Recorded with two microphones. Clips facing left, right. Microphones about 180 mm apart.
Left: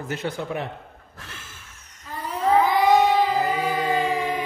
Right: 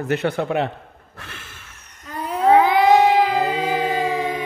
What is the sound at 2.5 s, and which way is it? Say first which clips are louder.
Child singing: right 3 dB; 80° right.